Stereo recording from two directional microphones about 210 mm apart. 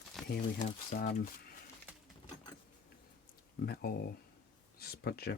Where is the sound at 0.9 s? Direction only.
50° left (ahead or behind).